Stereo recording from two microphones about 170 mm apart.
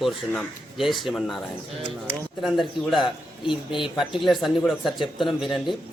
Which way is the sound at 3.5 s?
30° left (ahead or behind).